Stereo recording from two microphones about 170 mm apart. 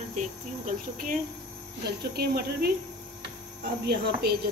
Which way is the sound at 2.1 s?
65° right (ahead or behind).